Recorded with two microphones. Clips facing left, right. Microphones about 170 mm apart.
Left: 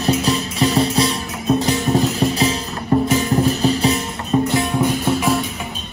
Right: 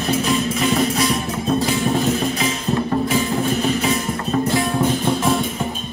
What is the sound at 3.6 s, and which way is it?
Music, 35° left (ahead or behind).